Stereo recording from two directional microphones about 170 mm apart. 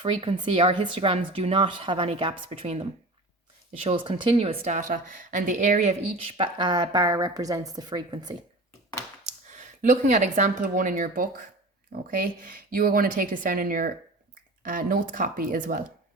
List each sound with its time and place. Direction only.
0.0 s a woman's voice: 30° right (ahead or behind)
3.8 s a woman's voice: 30° right (ahead or behind)
6.4 s speech: 25° right (ahead or behind)
9.2 s speech: 45° right (ahead or behind)